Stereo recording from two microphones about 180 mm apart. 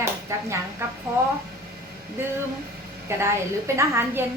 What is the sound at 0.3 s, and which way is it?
Speech, 15° right (ahead or behind).